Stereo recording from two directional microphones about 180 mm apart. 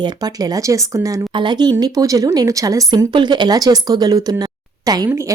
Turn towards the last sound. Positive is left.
turn(degrees=-15)  # may be behind; listen again after turning